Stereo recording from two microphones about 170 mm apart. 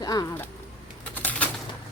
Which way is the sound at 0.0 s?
25° left (ahead or behind).